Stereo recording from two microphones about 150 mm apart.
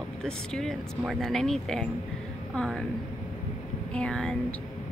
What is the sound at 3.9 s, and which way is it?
Speech, 5° left (ahead or behind).